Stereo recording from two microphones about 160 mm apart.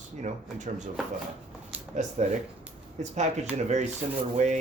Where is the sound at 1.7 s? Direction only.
10° right (ahead or behind).